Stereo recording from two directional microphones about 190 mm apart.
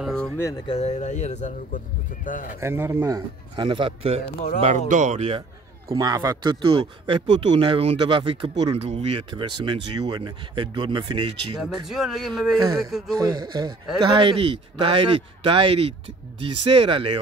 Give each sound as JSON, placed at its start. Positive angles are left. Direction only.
{"t": 0.0, "sound": "speech", "side_deg": 5}
{"t": 0.7, "sound": "speech", "side_deg": 35}
{"t": 2.6, "sound": "speech", "side_deg": -15}
{"t": 4.6, "sound": "speech", "side_deg": -40}
{"t": 5.9, "sound": "speech", "side_deg": -20}
{"t": 11.6, "sound": "speech", "side_deg": 0}
{"t": 13.1, "sound": "speech", "side_deg": -20}